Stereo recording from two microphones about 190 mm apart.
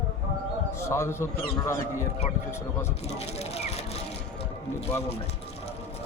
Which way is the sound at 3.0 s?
35° left (ahead or behind).